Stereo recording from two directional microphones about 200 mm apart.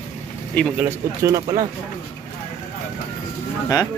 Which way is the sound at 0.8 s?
15° right (ahead or behind).